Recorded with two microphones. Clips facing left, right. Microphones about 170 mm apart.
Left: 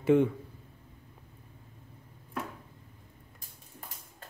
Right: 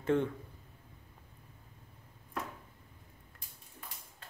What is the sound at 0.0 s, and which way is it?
Speech, 10° left (ahead or behind).